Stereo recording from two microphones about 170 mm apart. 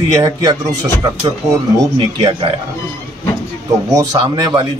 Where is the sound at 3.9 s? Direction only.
25° right (ahead or behind).